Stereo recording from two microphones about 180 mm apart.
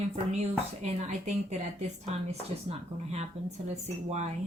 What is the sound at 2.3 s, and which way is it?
Speech, 35° right (ahead or behind).